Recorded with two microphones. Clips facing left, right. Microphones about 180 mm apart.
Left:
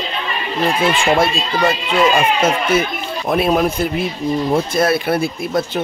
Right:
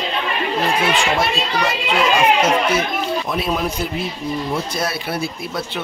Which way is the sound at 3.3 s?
55° left (ahead or behind).